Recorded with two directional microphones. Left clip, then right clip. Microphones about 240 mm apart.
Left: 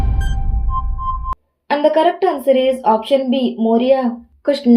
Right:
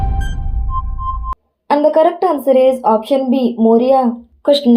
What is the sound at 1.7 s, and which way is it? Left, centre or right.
Speech, right.